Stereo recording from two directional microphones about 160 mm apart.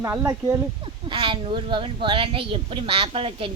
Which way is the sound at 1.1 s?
30° right (ahead or behind).